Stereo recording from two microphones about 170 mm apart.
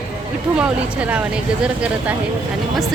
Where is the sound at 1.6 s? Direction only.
5° right (ahead or behind).